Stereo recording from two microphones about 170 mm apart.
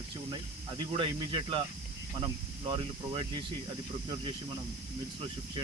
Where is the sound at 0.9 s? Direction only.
30° right (ahead or behind).